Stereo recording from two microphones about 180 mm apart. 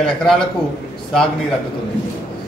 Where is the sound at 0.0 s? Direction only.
5° left (ahead or behind).